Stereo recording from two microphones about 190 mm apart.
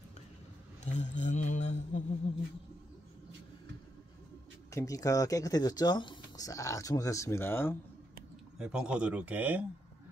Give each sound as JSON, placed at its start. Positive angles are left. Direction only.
{"t": 0.8, "sound": "mantra", "side_deg": 40}
{"t": 4.6, "sound": "speech", "side_deg": 15}
{"t": 8.5, "sound": "a man's voice", "side_deg": -5}